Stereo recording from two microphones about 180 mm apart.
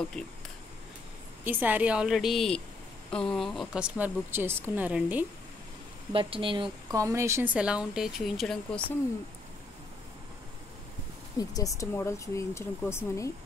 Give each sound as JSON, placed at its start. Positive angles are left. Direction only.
{"t": 0.2, "sound": "a woman's voice", "side_deg": 5}
{"t": 1.4, "sound": "a woman's voice", "side_deg": -10}
{"t": 6.1, "sound": "speech", "side_deg": -30}
{"t": 11.3, "sound": "speech", "side_deg": 20}